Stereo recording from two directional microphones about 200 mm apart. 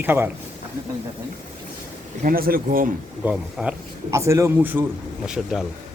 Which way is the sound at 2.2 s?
45° right (ahead or behind).